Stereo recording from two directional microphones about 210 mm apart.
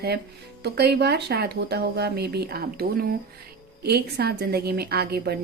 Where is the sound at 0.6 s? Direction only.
50° right (ahead or behind).